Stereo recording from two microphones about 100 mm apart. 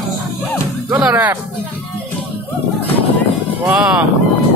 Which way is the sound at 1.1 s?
15° right (ahead or behind).